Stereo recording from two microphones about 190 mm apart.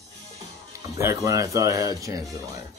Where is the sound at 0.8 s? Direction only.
15° right (ahead or behind).